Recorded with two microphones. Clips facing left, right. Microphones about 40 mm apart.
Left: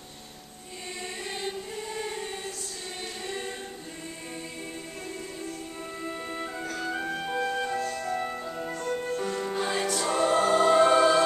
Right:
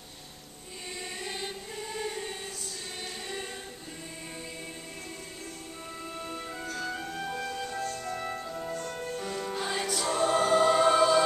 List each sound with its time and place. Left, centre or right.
1.2 s choir: centre
6.0 s music: centre
8.3 s music: centre